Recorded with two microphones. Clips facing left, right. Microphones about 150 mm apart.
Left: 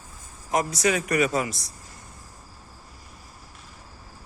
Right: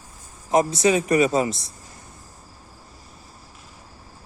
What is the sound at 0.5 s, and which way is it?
A man's voice, 25° right (ahead or behind).